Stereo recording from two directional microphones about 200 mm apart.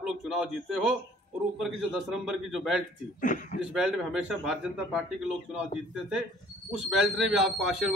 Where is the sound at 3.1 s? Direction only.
40° left (ahead or behind).